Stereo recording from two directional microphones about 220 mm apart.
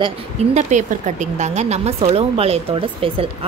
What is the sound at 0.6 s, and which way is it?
Speech, 35° right (ahead or behind).